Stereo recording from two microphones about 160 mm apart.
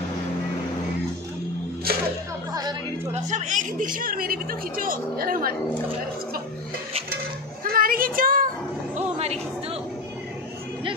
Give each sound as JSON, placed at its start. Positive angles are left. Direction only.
{"t": 3.1, "sound": "a woman's voice", "side_deg": -50}
{"t": 7.7, "sound": "child singing", "side_deg": -60}
{"t": 8.9, "sound": "a sound", "side_deg": -40}